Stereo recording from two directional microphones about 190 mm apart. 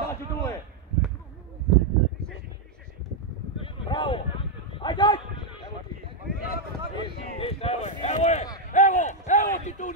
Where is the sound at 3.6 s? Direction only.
25° left (ahead or behind).